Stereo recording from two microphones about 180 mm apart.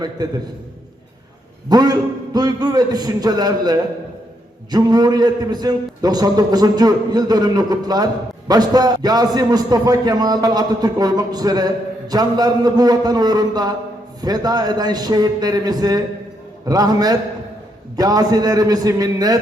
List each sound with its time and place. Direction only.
0.2 s a man's voice: 20° right (ahead or behind)
1.7 s a man's voice: 20° right (ahead or behind)